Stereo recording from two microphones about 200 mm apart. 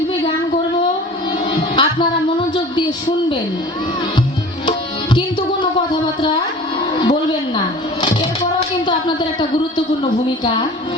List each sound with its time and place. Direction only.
1.7 s music: 25° left (ahead or behind)
7.0 s a sound: 20° left (ahead or behind)
8.9 s a woman's voice: 25° left (ahead or behind)